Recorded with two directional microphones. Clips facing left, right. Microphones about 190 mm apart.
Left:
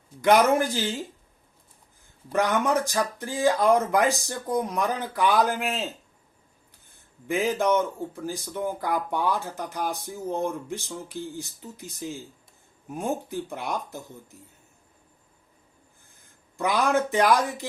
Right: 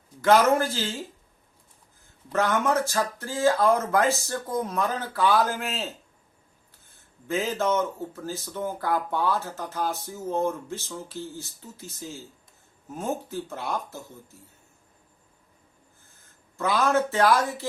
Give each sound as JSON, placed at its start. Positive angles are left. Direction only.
{"t": 0.2, "sound": "speech", "side_deg": 15}
{"t": 2.3, "sound": "speech", "side_deg": 15}
{"t": 6.9, "sound": "speech", "side_deg": 15}
{"t": 16.6, "sound": "speech", "side_deg": 15}